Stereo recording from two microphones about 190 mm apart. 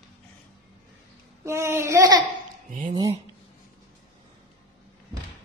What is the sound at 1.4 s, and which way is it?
Speech, 15° right (ahead or behind).